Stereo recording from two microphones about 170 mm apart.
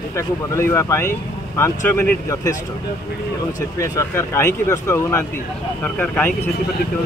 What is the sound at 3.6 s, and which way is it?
Speech, 20° left (ahead or behind).